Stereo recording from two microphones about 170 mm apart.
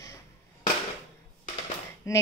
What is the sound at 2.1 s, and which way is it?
Speech, 20° left (ahead or behind).